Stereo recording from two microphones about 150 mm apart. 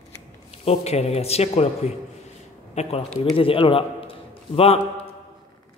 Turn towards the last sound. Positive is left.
turn(degrees=40)  # may be behind; listen again after turning